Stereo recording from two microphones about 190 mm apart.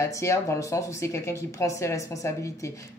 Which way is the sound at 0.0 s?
15° left (ahead or behind).